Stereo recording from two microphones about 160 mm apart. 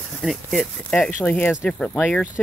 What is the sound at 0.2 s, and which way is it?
Speech, centre (ahead or behind).